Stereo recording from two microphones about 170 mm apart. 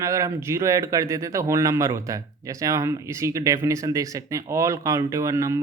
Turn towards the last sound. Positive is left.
turn(degrees=-20)  # may be behind; listen again after turning